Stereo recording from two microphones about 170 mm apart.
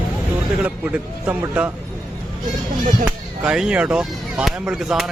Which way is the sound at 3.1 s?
5° right (ahead or behind).